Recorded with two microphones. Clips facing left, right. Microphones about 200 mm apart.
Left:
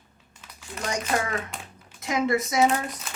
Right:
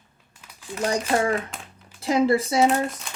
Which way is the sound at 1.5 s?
5° right (ahead or behind).